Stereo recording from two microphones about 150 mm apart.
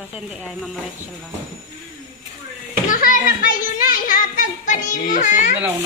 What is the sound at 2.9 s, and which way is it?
Children playing, 65° left (ahead or behind).